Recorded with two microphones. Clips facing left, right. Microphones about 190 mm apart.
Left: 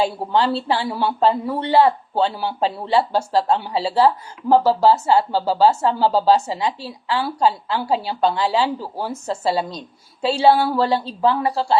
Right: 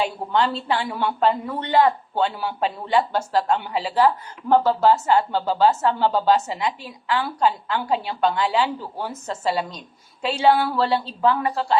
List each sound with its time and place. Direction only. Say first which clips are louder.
0.0 s speech: left 3 dB; 35° left (ahead or behind)